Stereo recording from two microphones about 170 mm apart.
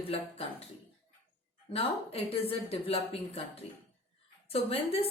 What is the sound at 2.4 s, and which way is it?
A woman's voice, 35° left (ahead or behind).